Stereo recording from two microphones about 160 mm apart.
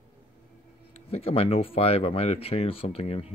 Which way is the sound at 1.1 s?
35° left (ahead or behind).